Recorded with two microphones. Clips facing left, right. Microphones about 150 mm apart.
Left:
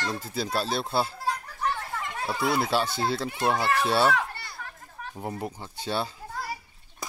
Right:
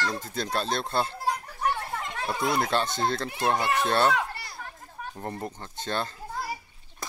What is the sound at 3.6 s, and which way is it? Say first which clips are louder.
Speech: left 1 dB; 20° right (ahead or behind).